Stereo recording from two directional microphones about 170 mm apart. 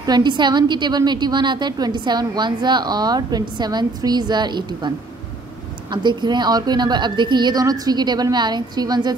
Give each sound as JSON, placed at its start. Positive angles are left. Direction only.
{"t": 0.0, "sound": "a woman's voice", "side_deg": -25}